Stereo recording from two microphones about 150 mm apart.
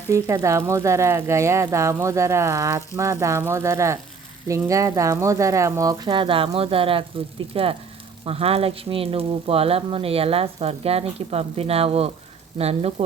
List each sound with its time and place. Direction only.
0.1 s speech: 20° right (ahead or behind); by 13.1 s 45° right (ahead or behind)